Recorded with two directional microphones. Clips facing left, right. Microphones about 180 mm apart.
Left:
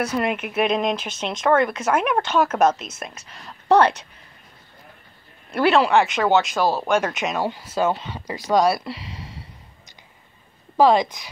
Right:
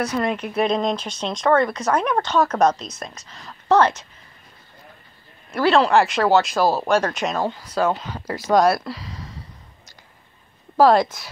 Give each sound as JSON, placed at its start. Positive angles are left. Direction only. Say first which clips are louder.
{"t": 0.1, "sound": "speech", "louder": "even", "side_deg": 10}
{"t": 5.7, "sound": "speech", "louder": "right 1 dB", "side_deg": 0}
{"t": 8.3, "sound": "speech", "louder": "right 2 dB", "side_deg": 15}
{"t": 11.0, "sound": "speech", "louder": "right 2 dB", "side_deg": 15}